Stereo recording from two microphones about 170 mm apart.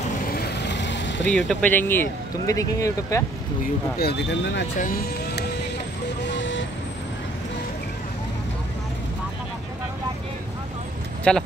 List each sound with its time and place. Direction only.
0.3 s vehicle: 75° left (ahead or behind)
1.3 s speech: 10° left (ahead or behind)
4.0 s speech: 85° left
6.2 s vehicle: 90° left
11.3 s speech: 5° left (ahead or behind)